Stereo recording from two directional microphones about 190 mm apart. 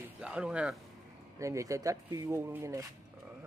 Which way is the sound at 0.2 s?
5° right (ahead or behind).